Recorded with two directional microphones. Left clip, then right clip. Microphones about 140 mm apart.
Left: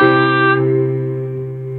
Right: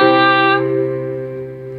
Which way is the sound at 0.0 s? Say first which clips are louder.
Right 1 dB; 20° right (ahead or behind).